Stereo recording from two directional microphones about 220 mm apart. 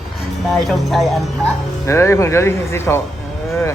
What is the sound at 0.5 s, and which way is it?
Speech, centre (ahead or behind).